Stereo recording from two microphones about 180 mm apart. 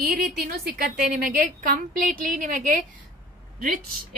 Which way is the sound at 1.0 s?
50° right (ahead or behind).